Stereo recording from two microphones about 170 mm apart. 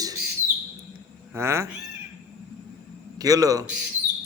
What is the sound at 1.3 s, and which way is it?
Speech, 15° right (ahead or behind).